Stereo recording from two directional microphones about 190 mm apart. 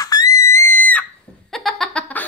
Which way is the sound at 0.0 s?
20° left (ahead or behind).